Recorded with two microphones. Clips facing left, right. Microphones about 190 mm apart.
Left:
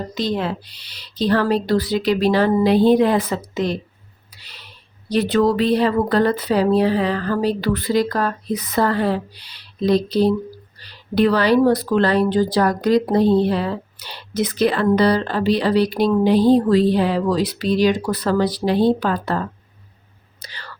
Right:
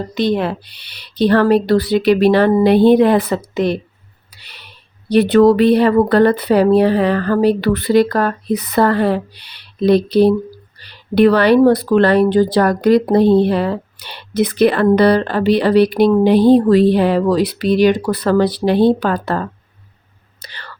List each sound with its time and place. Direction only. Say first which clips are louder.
0.1 s speech: right 6 dB; 65° right (ahead or behind)
20.4 s whispering: right 2 dB; 60° right (ahead or behind)